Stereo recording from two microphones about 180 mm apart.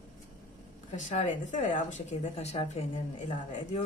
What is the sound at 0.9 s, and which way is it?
Speech, 45° left (ahead or behind).